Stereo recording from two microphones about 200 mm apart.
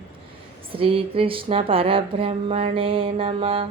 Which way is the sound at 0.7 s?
25° right (ahead or behind).